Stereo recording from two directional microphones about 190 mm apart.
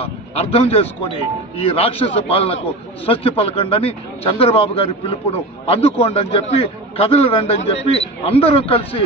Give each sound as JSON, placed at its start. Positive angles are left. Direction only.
{"t": 0.0, "sound": "a man's voice", "side_deg": 30}